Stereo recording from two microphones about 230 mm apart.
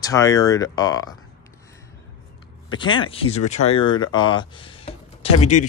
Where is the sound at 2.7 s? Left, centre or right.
Left.